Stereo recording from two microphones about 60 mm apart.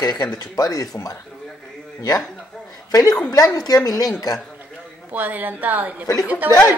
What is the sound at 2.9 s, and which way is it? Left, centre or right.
A woman's voice, left.